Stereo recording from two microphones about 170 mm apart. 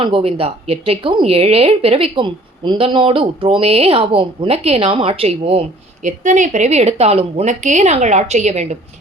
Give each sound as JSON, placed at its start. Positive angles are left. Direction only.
{"t": 0.0, "sound": "a woman's voice", "side_deg": -30}